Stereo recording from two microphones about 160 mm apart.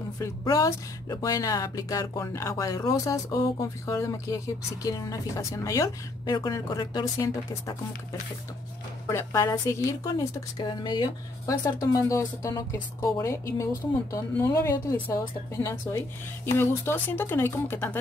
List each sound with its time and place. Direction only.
0.2 s speech: 20° left (ahead or behind)
9.1 s speech: 15° left (ahead or behind)